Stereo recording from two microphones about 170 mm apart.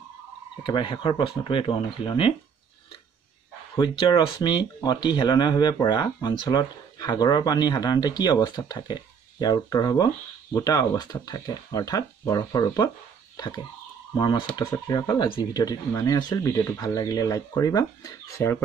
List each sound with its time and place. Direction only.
0.7 s speech: 30° left (ahead or behind)
3.7 s speech: 25° left (ahead or behind)
14.1 s speech: 25° left (ahead or behind)